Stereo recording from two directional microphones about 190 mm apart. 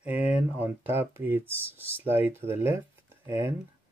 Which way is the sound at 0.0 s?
10° right (ahead or behind).